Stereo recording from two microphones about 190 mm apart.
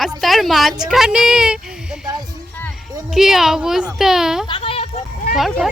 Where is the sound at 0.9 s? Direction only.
5° right (ahead or behind).